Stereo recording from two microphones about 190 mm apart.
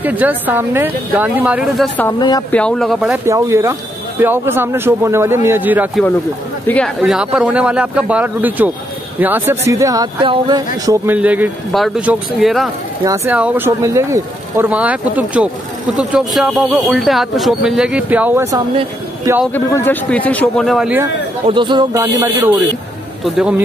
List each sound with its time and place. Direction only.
0.0 s speech: 10° right (ahead or behind)
2.1 s speech: 20° left (ahead or behind)
2.5 s speech: 5° left (ahead or behind)
3.3 s speech: 15° right (ahead or behind)
6.7 s speech: 10° left (ahead or behind)
7.0 s speech: 5° right (ahead or behind); by 11.1 s 20° right (ahead or behind)
11.1 s speech: 10° right (ahead or behind)
13.0 s speech: 15° right (ahead or behind)
19.4 s speech: 10° left (ahead or behind)
21.5 s speech: 25° right (ahead or behind)
22.0 s speech: 15° right (ahead or behind)